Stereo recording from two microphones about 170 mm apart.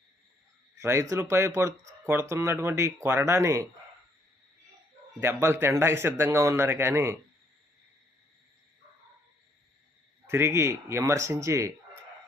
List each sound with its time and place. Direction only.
0.8 s speech: 15° right (ahead or behind)
5.2 s speech: 15° right (ahead or behind)
10.2 s speech: 15° right (ahead or behind)